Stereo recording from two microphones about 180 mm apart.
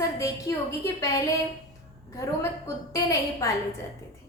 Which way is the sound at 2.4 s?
15° left (ahead or behind).